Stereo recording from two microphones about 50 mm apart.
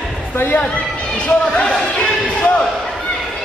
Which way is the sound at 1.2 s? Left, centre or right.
Centre.